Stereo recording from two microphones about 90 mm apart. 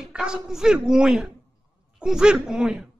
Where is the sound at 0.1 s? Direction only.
10° right (ahead or behind).